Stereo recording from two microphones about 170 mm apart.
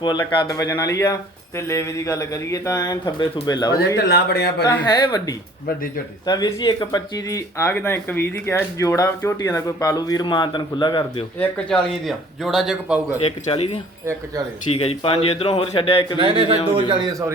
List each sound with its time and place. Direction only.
0.0 s speech: 25° left (ahead or behind)
3.7 s speech: 70° left (ahead or behind)
4.9 s speech: 25° left (ahead or behind)
11.3 s a man's voice: 5° left (ahead or behind)
13.1 s speech: 35° left (ahead or behind)
14.0 s speech: 15° right (ahead or behind)
14.7 s speech: 35° left (ahead or behind)
16.2 s a man's voice: 30° right (ahead or behind)